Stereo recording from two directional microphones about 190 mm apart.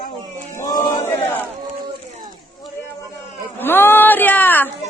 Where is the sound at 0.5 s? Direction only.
20° left (ahead or behind).